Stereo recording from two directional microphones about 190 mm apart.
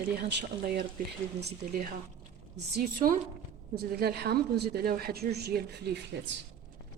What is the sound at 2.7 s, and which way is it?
A woman's voice, 50° right (ahead or behind).